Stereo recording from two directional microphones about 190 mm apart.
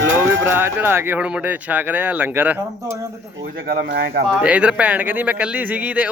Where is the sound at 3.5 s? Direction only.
50° right (ahead or behind).